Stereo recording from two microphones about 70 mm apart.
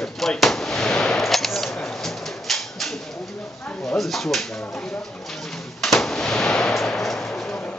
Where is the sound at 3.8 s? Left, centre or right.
Centre.